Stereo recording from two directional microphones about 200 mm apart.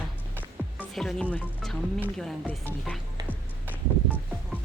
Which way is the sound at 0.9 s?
5° left (ahead or behind).